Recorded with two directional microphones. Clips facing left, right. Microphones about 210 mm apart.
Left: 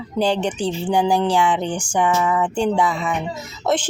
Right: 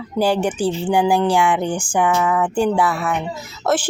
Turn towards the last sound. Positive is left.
turn(degrees=-5)  # may be behind; listen again after turning